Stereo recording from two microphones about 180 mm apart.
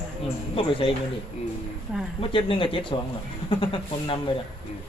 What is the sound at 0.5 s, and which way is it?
Speech, 30° left (ahead or behind).